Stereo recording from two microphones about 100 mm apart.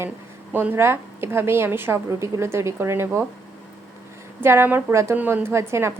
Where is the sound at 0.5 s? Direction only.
20° right (ahead or behind).